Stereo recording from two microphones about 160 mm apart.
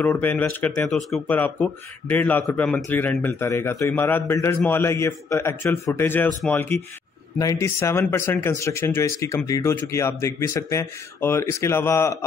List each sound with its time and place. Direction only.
0.0 s speech: 10° left (ahead or behind)